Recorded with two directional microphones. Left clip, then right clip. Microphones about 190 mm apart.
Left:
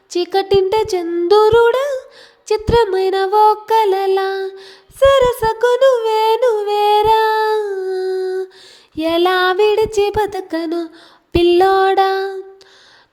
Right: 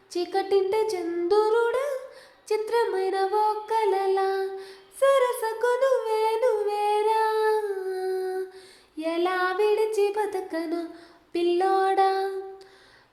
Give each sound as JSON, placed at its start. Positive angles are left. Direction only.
{"t": 0.1, "sound": "music", "side_deg": 45}